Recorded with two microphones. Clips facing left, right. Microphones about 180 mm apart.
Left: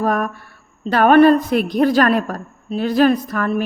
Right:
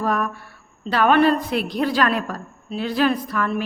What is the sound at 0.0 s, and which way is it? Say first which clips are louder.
A woman's voice: left 4 dB; 45° left (ahead or behind).